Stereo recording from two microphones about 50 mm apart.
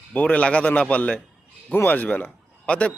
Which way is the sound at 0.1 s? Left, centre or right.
Left.